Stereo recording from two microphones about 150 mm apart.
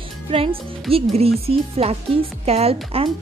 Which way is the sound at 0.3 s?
40° right (ahead or behind).